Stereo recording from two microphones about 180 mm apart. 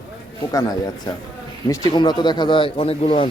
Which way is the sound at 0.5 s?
20° left (ahead or behind).